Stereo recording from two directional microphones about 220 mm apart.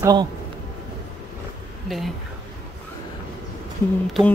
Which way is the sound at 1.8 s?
Centre (ahead or behind).